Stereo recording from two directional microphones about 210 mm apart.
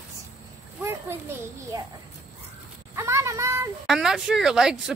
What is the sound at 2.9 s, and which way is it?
Child singing, 15° right (ahead or behind).